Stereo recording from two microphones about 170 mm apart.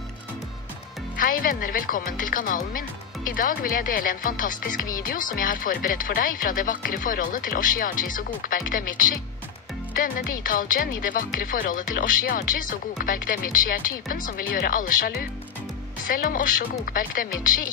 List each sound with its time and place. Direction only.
1.1 s speech: 55° left (ahead or behind)